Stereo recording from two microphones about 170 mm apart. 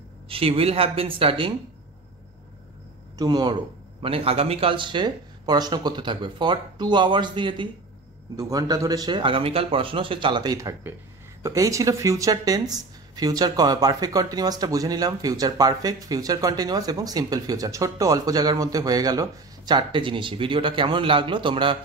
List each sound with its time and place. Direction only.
0.3 s a woman's voice: 35° right (ahead or behind)
3.2 s speech: 25° right (ahead or behind)